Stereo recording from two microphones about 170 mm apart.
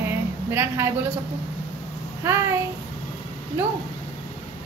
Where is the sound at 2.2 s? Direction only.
15° right (ahead or behind).